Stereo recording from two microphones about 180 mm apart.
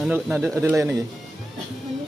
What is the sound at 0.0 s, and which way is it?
Speech, 10° right (ahead or behind).